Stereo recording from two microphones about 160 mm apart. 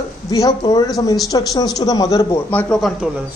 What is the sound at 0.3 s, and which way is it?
Speech, 25° left (ahead or behind).